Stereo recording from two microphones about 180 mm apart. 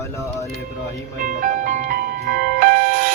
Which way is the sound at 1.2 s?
45° right (ahead or behind).